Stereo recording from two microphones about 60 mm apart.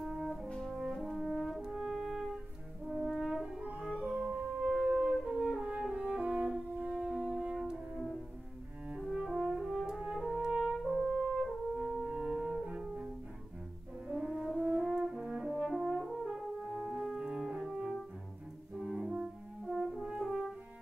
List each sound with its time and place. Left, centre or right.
0.0 s brass instrument: centre
0.5 s brass instrument: centre
0.9 s french horn: centre
3.9 s music: centre
5.6 s french horn: right
6.9 s music: centre
9.0 s french horn: centre
11.8 s music: centre
14.0 s french horn: centre
14.3 s french horn: centre